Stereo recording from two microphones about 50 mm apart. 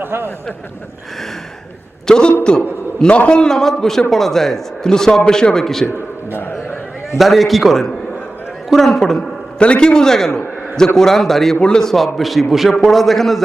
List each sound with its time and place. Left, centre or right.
0.0 s speech: right
2.0 s a man's voice: centre
6.3 s a sound: left
7.2 s a man's voice: centre
9.6 s a man's voice: left; by 13.4 s centre